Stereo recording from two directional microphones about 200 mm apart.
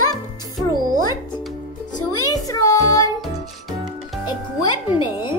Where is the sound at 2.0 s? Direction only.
20° left (ahead or behind).